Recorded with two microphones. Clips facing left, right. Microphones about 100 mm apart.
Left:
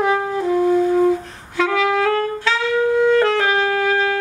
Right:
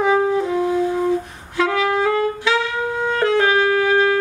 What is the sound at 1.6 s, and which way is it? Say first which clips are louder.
Saxophone: left 1 dB; 5° right (ahead or behind).